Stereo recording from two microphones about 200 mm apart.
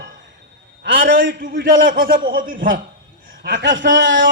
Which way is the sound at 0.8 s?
65° right (ahead or behind).